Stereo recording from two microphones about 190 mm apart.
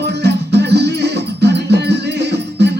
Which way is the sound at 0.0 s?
60° right (ahead or behind).